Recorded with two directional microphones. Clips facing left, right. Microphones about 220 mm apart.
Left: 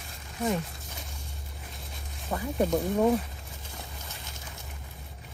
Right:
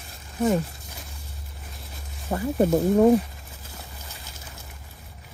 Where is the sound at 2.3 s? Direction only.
25° right (ahead or behind).